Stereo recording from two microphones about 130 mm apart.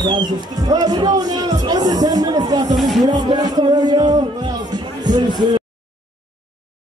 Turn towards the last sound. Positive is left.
turn(degrees=-35)  # may be behind; listen again after turning